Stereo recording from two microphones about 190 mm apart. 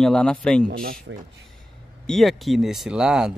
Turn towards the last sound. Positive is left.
turn(degrees=-5)  # may be behind; listen again after turning